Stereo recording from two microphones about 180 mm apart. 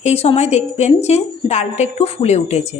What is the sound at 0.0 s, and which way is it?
A woman's voice, 35° left (ahead or behind).